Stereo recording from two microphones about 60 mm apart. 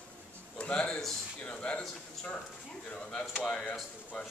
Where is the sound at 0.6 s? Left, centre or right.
Centre.